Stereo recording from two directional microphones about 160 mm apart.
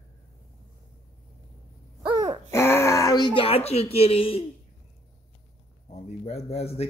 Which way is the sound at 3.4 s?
40° left (ahead or behind).